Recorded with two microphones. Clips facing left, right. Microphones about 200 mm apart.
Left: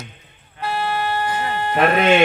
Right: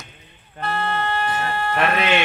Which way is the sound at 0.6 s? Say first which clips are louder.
Left 1 dB; 10° left (ahead or behind).